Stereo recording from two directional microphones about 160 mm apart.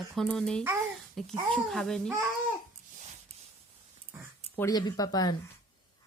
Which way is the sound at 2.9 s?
50° right (ahead or behind).